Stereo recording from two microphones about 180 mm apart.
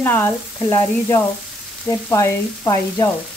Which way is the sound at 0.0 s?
10° left (ahead or behind).